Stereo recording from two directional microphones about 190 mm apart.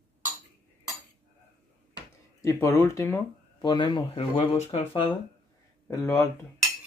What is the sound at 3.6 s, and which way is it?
Speech, 25° left (ahead or behind).